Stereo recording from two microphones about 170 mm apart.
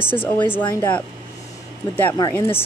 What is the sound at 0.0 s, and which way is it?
Speech, 10° left (ahead or behind).